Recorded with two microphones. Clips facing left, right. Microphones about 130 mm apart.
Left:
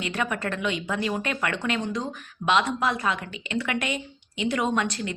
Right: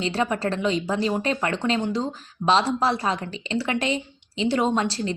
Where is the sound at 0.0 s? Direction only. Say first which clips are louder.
Right 4 dB; 30° right (ahead or behind).